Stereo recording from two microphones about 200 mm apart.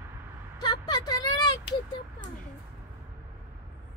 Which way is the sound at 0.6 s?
20° left (ahead or behind).